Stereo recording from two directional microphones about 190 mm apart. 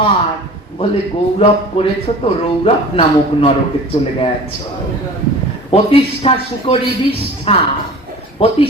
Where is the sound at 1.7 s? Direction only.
30° left (ahead or behind).